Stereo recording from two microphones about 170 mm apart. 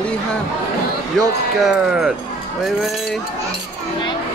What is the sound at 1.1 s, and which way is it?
Speech, 5° right (ahead or behind).